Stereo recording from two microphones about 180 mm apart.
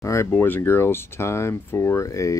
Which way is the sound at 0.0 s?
15° left (ahead or behind).